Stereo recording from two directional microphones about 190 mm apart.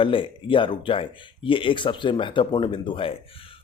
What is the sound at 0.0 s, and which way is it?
Speech, 25° left (ahead or behind).